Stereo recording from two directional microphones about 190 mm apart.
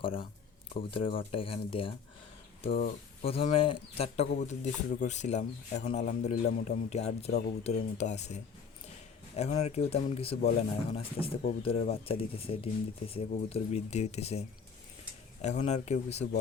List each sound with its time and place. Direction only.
0.0 s speech: 30° left (ahead or behind)
2.6 s speech: 50° left (ahead or behind)
3.2 s speech: 30° left (ahead or behind)